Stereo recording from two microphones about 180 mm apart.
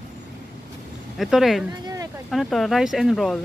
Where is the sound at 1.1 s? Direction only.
Centre (ahead or behind).